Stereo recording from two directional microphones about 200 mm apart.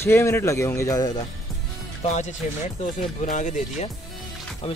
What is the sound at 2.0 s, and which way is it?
Speech, 35° left (ahead or behind).